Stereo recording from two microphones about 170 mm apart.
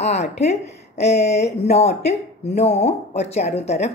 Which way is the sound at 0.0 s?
40° left (ahead or behind).